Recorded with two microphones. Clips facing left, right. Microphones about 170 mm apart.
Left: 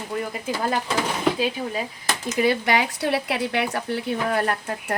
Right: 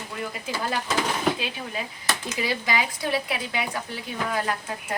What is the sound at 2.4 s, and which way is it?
Speech, 60° left (ahead or behind).